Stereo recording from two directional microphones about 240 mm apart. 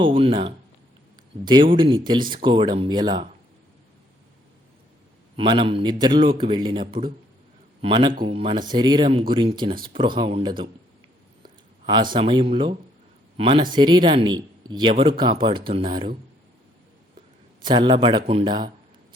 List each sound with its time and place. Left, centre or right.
0.0 s speech: right
1.7 s speech: centre
5.4 s a man's voice: centre
12.1 s speech: centre
17.6 s speech: centre